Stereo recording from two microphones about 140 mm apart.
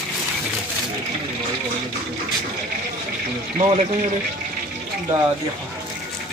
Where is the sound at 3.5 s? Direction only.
45° right (ahead or behind).